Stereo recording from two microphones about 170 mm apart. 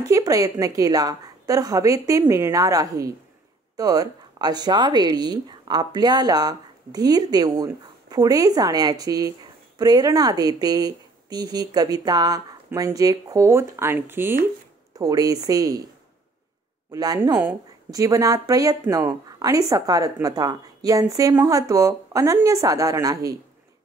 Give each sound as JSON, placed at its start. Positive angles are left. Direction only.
{"t": 0.1, "sound": "speech", "side_deg": -20}
{"t": 16.9, "sound": "speech", "side_deg": -20}